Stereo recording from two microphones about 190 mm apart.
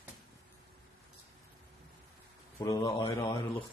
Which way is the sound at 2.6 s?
20° left (ahead or behind).